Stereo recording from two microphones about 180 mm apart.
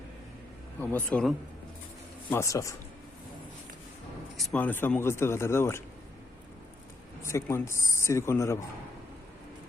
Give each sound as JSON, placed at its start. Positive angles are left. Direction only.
{"t": 0.8, "sound": "speech", "side_deg": 10}
{"t": 2.3, "sound": "speech", "side_deg": 15}
{"t": 4.4, "sound": "speech", "side_deg": 5}
{"t": 7.2, "sound": "speech", "side_deg": 15}